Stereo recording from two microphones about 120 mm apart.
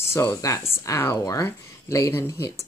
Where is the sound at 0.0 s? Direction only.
20° left (ahead or behind).